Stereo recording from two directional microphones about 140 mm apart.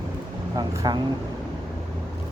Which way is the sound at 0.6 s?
30° right (ahead or behind).